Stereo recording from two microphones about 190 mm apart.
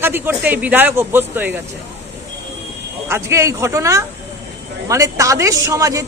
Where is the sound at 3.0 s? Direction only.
15° right (ahead or behind).